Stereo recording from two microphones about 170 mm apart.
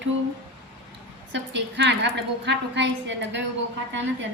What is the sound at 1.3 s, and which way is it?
A woman's voice, 90° right.